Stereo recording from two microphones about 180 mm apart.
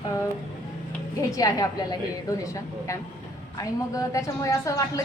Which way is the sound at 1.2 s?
20° left (ahead or behind).